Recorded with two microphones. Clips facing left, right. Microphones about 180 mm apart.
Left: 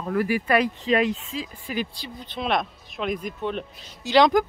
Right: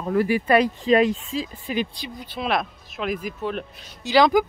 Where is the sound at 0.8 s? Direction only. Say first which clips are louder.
Right 4 dB; 40° right (ahead or behind).